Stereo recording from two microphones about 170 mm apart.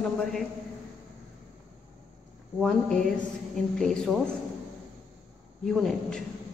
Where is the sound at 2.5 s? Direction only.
Centre (ahead or behind).